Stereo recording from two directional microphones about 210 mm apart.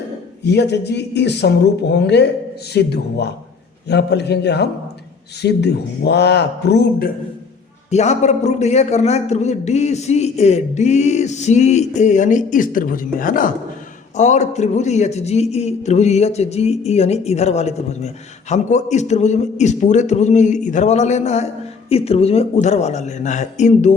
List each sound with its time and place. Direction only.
0.5 s speech: 55° left (ahead or behind)
7.9 s a man's voice: 30° left (ahead or behind)